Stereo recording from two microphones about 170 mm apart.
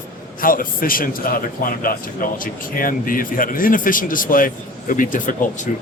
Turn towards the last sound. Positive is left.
turn(degrees=50)  # may be behind; listen again after turning